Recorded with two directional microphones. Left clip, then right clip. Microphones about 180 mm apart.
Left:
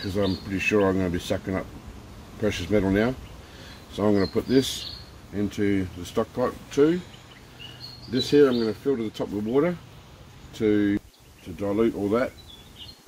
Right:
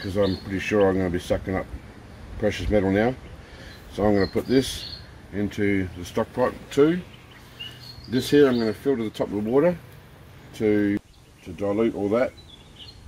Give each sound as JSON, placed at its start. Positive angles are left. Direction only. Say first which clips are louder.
{"t": 0.1, "sound": "speech", "louder": "right 4 dB", "side_deg": 0}
{"t": 5.3, "sound": "speech", "louder": "right 1 dB", "side_deg": -15}
{"t": 6.7, "sound": "speech", "louder": "right 1 dB", "side_deg": -45}
{"t": 8.1, "sound": "speech", "louder": "right 1 dB", "side_deg": -50}
{"t": 9.2, "sound": "speech", "louder": "right 4 dB", "side_deg": -25}
{"t": 10.6, "sound": "speech", "louder": "right 1 dB", "side_deg": -15}
{"t": 11.5, "sound": "speech", "louder": "right 1 dB", "side_deg": 5}